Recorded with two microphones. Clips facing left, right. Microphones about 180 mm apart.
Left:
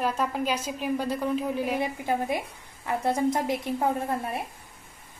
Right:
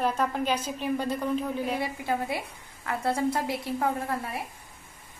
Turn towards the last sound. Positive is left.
turn(degrees=25)  # may be behind; listen again after turning